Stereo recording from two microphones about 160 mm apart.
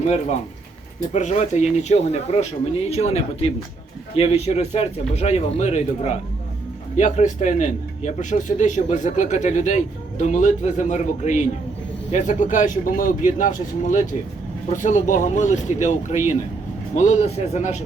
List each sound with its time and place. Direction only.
0.9 s a man's voice: 50° left (ahead or behind)